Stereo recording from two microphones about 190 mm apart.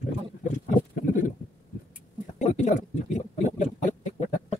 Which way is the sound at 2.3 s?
35° left (ahead or behind).